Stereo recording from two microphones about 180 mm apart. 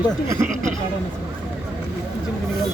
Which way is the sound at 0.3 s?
15° right (ahead or behind).